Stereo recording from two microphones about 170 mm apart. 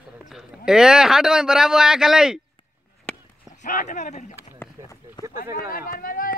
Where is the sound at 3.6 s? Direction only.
45° left (ahead or behind).